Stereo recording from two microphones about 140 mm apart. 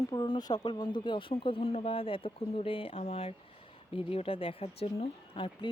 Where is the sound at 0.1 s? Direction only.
30° left (ahead or behind).